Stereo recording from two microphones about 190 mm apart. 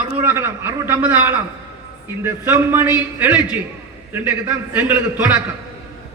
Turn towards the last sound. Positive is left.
turn(degrees=-10)  # may be behind; listen again after turning